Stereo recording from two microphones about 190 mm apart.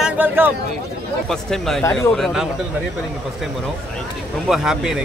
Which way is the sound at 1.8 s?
15° left (ahead or behind).